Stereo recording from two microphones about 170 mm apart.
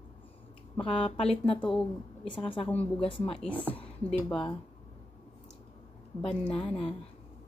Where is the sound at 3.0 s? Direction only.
30° left (ahead or behind).